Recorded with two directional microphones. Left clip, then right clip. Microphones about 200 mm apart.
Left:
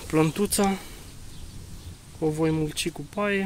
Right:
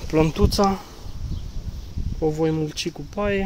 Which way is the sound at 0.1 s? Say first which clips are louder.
Right 3 dB; centre (ahead or behind).